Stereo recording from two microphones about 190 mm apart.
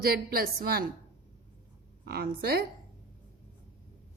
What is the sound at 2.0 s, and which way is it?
Speech, 55° right (ahead or behind).